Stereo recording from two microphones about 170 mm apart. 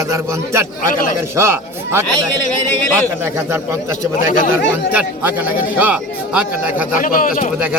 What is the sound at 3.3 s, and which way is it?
Speech, 15° right (ahead or behind).